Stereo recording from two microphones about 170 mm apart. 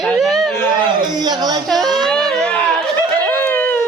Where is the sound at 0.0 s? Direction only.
Centre (ahead or behind).